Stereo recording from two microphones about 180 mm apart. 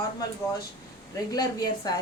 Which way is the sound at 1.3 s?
20° left (ahead or behind).